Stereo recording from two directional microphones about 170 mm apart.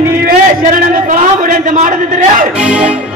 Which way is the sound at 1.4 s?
50° right (ahead or behind).